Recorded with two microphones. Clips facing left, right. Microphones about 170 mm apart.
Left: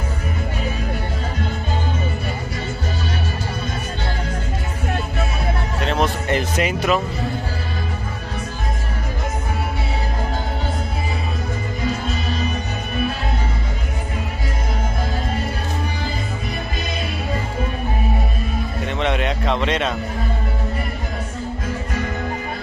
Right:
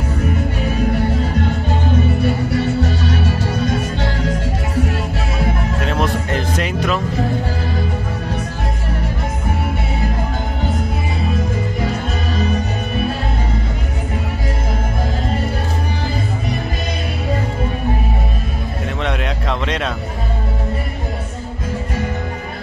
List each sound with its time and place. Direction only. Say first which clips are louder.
2.5 s music: right 9 dB; 70° right (ahead or behind)
5.9 s speech: left 1 dB; centre (ahead or behind)
18.9 s a sound: left 2 dB; centre (ahead or behind)